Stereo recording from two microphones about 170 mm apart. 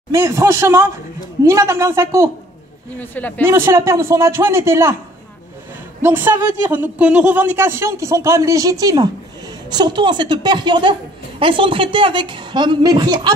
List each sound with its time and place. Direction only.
0.1 s speech: 15° right (ahead or behind)
3.0 s speech: 10° left (ahead or behind)
3.4 s speech: 15° right (ahead or behind)
6.0 s a woman's voice: 15° right (ahead or behind)